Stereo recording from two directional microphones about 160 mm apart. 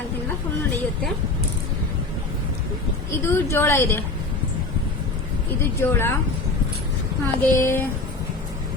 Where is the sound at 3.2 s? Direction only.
15° left (ahead or behind).